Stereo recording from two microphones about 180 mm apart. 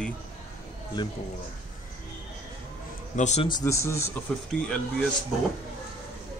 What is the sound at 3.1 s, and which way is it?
Speech, 40° left (ahead or behind).